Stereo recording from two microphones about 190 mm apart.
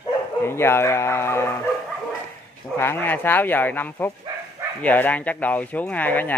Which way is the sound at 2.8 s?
10° left (ahead or behind).